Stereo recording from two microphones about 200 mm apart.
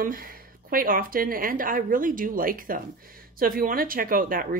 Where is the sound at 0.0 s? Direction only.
45° right (ahead or behind).